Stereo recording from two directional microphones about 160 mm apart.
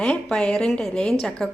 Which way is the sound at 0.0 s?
5° left (ahead or behind).